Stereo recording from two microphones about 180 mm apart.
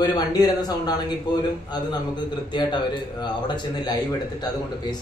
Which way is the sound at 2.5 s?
25° left (ahead or behind).